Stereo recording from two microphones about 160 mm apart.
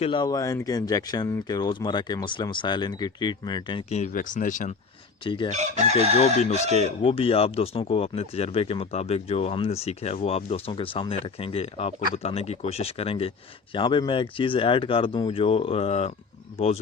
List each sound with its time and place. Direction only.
0.0 s speech: 30° left (ahead or behind)
3.8 s speech: 45° left (ahead or behind)
4.1 s speech: 55° left (ahead or behind)
5.2 s speech: 30° left (ahead or behind)
5.5 s chicken: 45° right (ahead or behind)
7.0 s speech: 35° left (ahead or behind)